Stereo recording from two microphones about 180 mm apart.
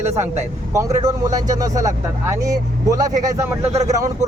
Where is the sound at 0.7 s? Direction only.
15° right (ahead or behind).